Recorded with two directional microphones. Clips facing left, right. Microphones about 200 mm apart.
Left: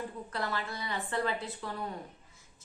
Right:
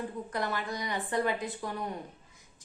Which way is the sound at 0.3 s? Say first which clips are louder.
Right 2 dB; 15° right (ahead or behind).